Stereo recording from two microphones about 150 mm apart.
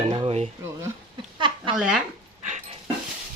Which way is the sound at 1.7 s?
5° right (ahead or behind).